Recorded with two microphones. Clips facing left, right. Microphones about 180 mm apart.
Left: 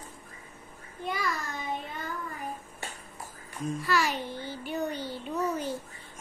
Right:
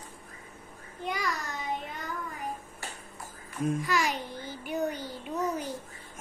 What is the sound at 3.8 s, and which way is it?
Speech, 15° right (ahead or behind).